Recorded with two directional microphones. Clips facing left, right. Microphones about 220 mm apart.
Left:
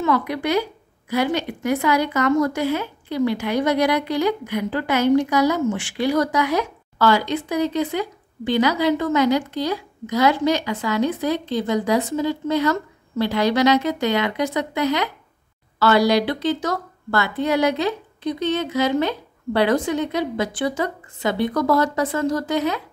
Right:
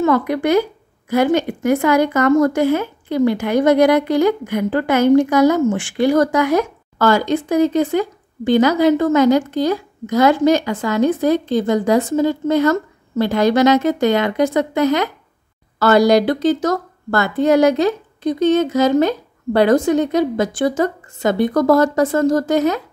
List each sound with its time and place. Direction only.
0.0 s speech: 50° right (ahead or behind)